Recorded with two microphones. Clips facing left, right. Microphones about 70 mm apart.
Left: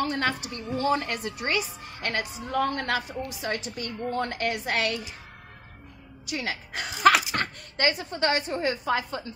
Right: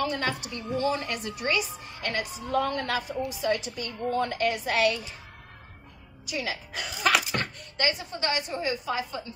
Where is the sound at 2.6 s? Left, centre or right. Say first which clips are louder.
Left 3 dB; left.